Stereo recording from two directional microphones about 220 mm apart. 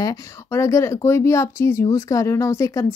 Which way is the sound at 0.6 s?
15° left (ahead or behind).